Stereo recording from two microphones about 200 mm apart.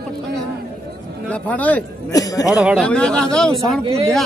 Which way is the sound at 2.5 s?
Centre (ahead or behind).